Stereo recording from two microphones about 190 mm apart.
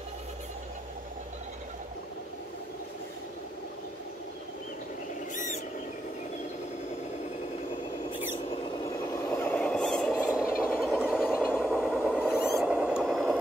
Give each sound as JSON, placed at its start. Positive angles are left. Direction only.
{"t": 5.3, "sound": "owl", "side_deg": 40}
{"t": 8.8, "sound": "vehicle", "side_deg": 15}
{"t": 12.5, "sound": "a sound", "side_deg": -5}